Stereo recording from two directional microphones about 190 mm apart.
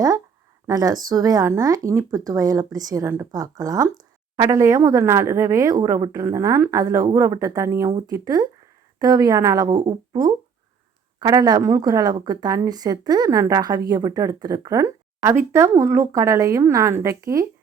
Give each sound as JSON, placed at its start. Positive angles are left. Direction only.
{"t": 0.7, "sound": "speech", "side_deg": -20}